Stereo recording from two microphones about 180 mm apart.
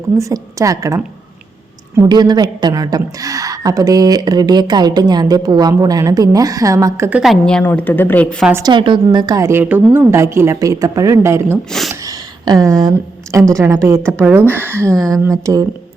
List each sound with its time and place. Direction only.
0.2 s a woman's voice: 15° right (ahead or behind)
7.2 s a woman's voice: centre (ahead or behind)
8.6 s a woman's voice: 25° right (ahead or behind)
11.7 s speech: centre (ahead or behind)
12.0 s a sound: 20° right (ahead or behind)
13.5 s a woman's voice: 15° right (ahead or behind)